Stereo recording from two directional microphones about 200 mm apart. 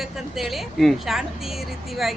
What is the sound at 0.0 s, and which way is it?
A woman's voice, centre (ahead or behind).